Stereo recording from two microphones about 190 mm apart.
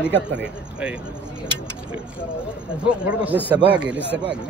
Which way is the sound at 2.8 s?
10° right (ahead or behind).